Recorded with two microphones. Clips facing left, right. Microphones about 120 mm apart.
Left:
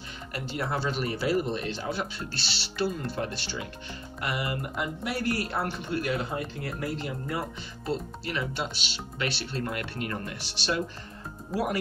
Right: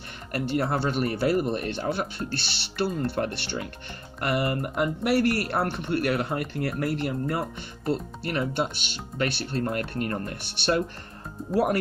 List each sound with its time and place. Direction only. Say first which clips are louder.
0.3 s speech: right 6 dB; 55° right (ahead or behind)
11.5 s speech: right 6 dB; centre (ahead or behind)